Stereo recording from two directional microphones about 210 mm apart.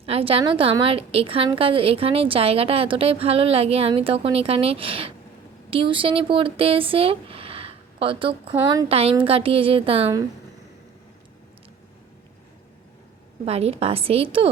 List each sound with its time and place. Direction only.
0.0 s a woman's voice: 30° right (ahead or behind)
13.4 s a woman's voice: 30° right (ahead or behind)